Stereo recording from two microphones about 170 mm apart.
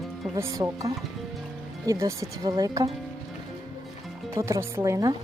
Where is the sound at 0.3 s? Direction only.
20° right (ahead or behind).